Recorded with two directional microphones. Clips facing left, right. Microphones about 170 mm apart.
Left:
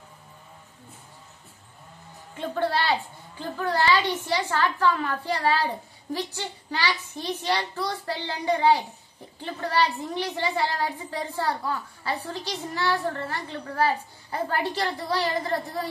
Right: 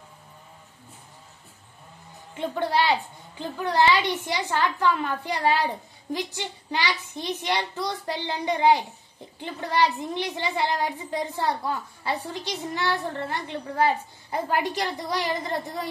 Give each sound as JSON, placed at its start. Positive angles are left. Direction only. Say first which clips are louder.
{"t": 2.3, "sound": "a child's voice", "louder": "right 1 dB", "side_deg": -15}